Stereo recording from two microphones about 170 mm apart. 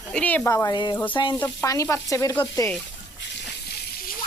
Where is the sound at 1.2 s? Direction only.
25° left (ahead or behind).